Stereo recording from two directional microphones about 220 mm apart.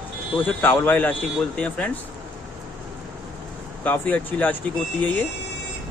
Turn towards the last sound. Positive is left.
turn(degrees=5)  # may be behind; listen again after turning